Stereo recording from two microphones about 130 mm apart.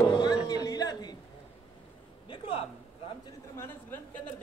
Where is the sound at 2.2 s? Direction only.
45° left (ahead or behind).